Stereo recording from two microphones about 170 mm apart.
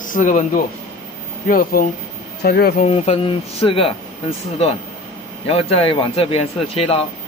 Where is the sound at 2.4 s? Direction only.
70° left (ahead or behind).